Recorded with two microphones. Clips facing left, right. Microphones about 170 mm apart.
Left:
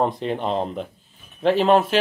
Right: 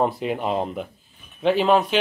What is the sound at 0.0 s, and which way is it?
Speech, 5° right (ahead or behind).